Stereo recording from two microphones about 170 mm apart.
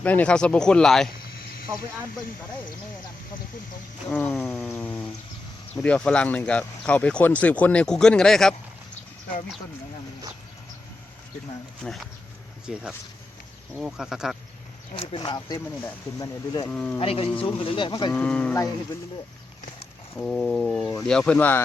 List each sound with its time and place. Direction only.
0.0 s speech: 10° left (ahead or behind)
1.7 s speech: 15° right (ahead or behind)
4.1 s speech: 10° left (ahead or behind)
4.4 s a sound: 5° left (ahead or behind)
5.7 s speech: 5° left (ahead or behind)
11.8 s speech: 5° left (ahead or behind)
14.9 s speech: 30° left (ahead or behind)
16.7 s speech: 5° left (ahead or behind)
17.0 s speech: 35° left (ahead or behind)
18.1 s speech: 5° left (ahead or behind)
20.1 s speech: 5° left (ahead or behind)